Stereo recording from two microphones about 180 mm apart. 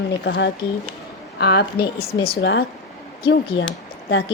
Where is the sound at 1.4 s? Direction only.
65° left (ahead or behind).